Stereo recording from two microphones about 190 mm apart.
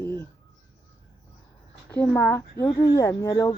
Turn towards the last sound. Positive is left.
turn(degrees=15)  # may be behind; listen again after turning